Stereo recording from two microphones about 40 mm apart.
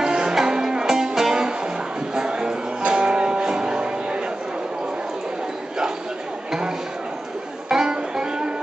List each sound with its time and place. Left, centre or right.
0.0 s music: centre
2.1 s a sound: centre
2.9 s music: right
7.7 s music: centre